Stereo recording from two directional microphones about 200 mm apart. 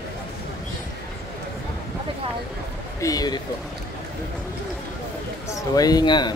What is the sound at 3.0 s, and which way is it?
Speech, 20° left (ahead or behind).